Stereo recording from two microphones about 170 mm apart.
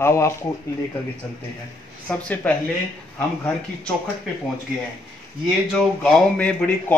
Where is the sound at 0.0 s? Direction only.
15° left (ahead or behind).